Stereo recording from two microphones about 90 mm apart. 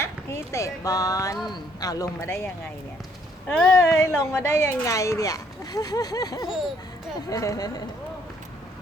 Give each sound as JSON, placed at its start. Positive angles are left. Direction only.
{"t": 0.0, "sound": "speech", "side_deg": 30}
{"t": 2.2, "sound": "a woman's voice", "side_deg": 25}
{"t": 3.4, "sound": "speech", "side_deg": 10}
{"t": 3.8, "sound": "a woman's voice", "side_deg": 25}
{"t": 4.9, "sound": "a woman's voice", "side_deg": 35}